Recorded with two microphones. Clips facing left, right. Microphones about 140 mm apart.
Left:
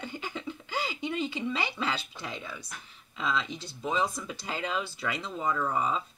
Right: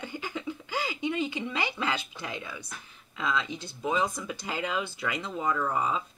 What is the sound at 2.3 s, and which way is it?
Speech, 5° right (ahead or behind).